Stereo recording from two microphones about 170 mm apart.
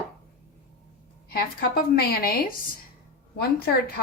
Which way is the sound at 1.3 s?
65° left (ahead or behind).